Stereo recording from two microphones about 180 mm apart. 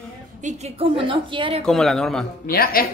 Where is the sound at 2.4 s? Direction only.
55° left (ahead or behind).